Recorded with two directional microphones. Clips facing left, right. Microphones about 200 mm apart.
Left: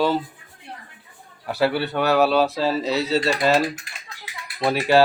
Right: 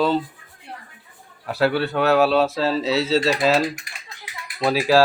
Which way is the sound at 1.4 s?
Centre (ahead or behind).